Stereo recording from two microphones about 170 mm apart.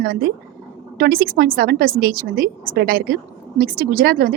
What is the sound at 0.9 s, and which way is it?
A woman's voice, 60° right (ahead or behind).